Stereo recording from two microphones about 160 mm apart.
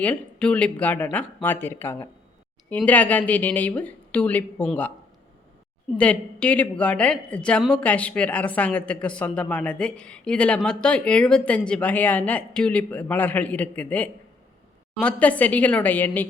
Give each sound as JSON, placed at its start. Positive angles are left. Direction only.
{"t": 0.0, "sound": "speech", "side_deg": 10}
{"t": 6.0, "sound": "speech", "side_deg": 10}